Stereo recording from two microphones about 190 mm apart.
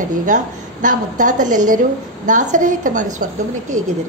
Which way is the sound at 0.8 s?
40° right (ahead or behind).